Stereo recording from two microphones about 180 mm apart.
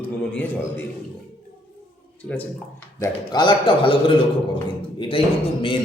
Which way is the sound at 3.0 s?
25° left (ahead or behind).